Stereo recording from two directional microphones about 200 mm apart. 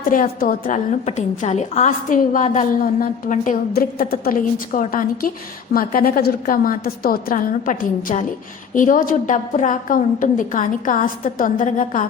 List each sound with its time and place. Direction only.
0.1 s a woman's voice: 45° left (ahead or behind)